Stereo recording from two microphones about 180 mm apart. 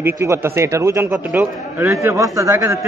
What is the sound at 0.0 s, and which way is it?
Speech, 15° right (ahead or behind).